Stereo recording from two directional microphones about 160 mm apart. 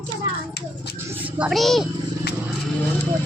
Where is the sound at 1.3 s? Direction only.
5° right (ahead or behind).